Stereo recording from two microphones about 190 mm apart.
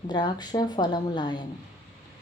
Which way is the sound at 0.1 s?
25° left (ahead or behind).